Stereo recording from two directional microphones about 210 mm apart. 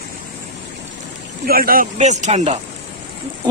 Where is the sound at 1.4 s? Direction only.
45° right (ahead or behind).